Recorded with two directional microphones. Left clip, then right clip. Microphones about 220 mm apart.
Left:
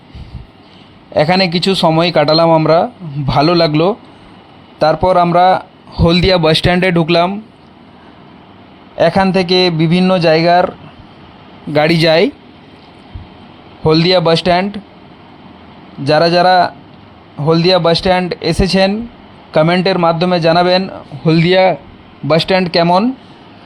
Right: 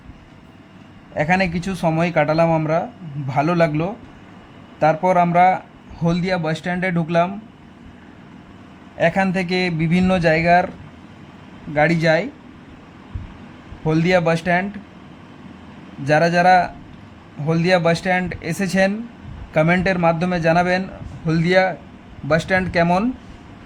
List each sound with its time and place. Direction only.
1.1 s speech: 25° left (ahead or behind)
6.1 s speech: 30° left (ahead or behind)
9.0 s speech: 20° left (ahead or behind)
11.7 s speech: 30° left (ahead or behind)
13.8 s speech: 25° left (ahead or behind)
16.0 s speech: 20° left (ahead or behind)